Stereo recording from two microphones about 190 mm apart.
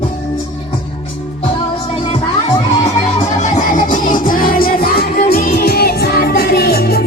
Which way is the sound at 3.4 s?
40° left (ahead or behind).